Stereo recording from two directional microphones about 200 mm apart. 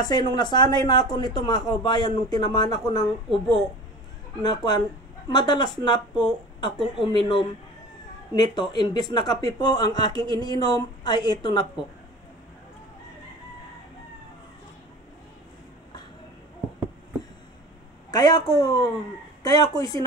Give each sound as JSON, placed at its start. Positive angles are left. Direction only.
{"t": 0.0, "sound": "speech", "side_deg": 20}
{"t": 3.3, "sound": "a woman's voice", "side_deg": 0}
{"t": 4.4, "sound": "speech", "side_deg": 20}
{"t": 18.1, "sound": "speech", "side_deg": 20}